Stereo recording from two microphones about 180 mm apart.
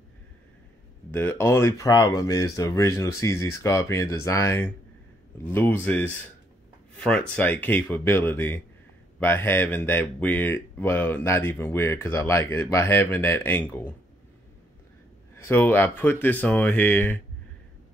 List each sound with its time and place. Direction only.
1.1 s speech: 15° left (ahead or behind)
15.3 s speech: 15° left (ahead or behind)